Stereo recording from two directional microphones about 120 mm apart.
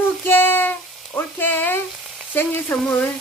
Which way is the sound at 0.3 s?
20° left (ahead or behind).